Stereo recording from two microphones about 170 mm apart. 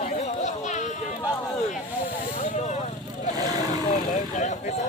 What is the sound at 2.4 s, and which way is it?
Vehicle, 40° left (ahead or behind).